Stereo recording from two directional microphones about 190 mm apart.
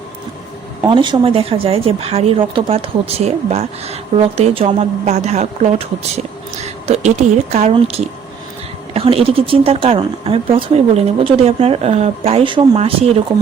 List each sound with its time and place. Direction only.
0.9 s speech: 25° right (ahead or behind)
6.8 s a sound: 35° right (ahead or behind)
7.5 s speech: 35° right (ahead or behind)